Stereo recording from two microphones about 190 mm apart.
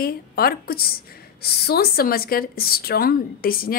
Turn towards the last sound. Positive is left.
turn(degrees=50)  # may be behind; listen again after turning